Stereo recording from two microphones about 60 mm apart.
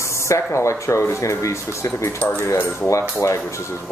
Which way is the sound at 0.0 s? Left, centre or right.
Left.